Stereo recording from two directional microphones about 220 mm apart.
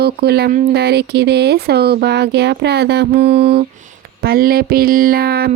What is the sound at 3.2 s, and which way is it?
Mantra, 30° right (ahead or behind).